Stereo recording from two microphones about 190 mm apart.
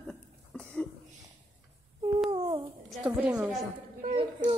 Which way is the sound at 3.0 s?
5° right (ahead or behind).